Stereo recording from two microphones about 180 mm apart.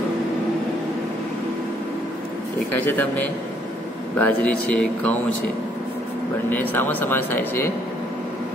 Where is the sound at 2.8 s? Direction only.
10° left (ahead or behind).